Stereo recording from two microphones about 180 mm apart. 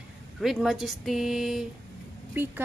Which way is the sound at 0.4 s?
Centre (ahead or behind).